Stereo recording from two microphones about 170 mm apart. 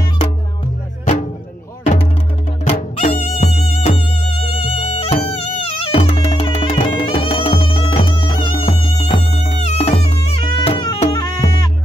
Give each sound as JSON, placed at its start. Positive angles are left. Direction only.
{"t": 2.6, "sound": "music", "side_deg": 40}